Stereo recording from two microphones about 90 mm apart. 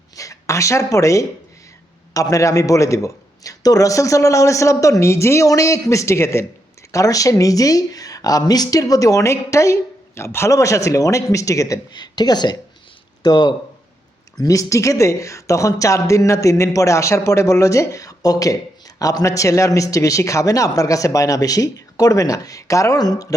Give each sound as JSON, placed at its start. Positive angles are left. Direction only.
{"t": 0.2, "sound": "speech", "side_deg": 35}
{"t": 11.9, "sound": "speech", "side_deg": 50}
{"t": 14.3, "sound": "speech", "side_deg": 40}